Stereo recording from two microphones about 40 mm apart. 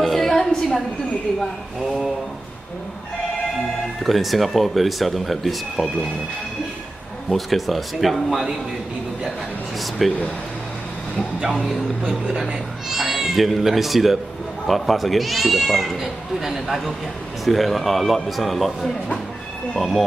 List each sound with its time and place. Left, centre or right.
0.0 s a sound: centre
4.0 s speech: centre
7.2 s speech: centre
10.0 s speech: centre
12.3 s speech: centre
12.9 s speech: centre